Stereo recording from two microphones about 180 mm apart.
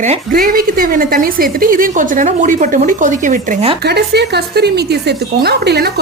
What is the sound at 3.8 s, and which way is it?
A woman's voice, 65° right (ahead or behind).